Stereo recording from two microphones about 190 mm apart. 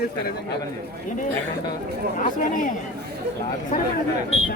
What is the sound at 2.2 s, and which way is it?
Speech, 45° left (ahead or behind).